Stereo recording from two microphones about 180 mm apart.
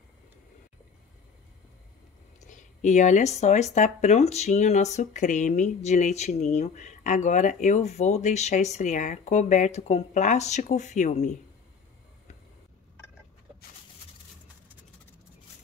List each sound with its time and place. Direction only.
2.4 s speech: 40° left (ahead or behind)